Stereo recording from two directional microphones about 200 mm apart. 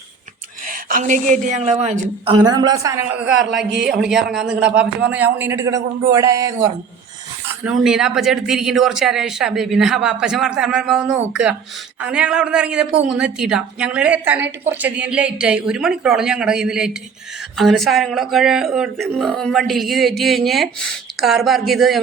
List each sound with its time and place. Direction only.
0.7 s a woman's voice: 45° right (ahead or behind); by 6.7 s 15° right (ahead or behind)
7.6 s speech: 5° right (ahead or behind)